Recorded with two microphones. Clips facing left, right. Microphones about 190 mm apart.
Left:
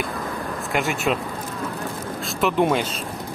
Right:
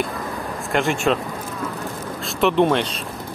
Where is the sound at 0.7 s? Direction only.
Centre (ahead or behind).